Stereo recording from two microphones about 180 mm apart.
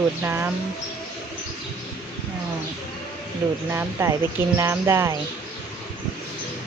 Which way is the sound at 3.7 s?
15° right (ahead or behind).